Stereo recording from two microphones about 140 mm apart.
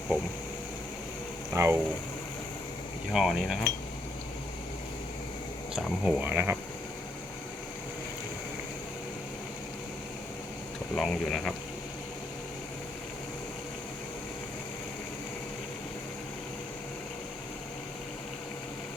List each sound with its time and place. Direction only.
1.5 s speech: 20° right (ahead or behind)
3.1 s speech: centre (ahead or behind)
6.1 s speech: 10° right (ahead or behind)
10.9 s speech: 5° left (ahead or behind)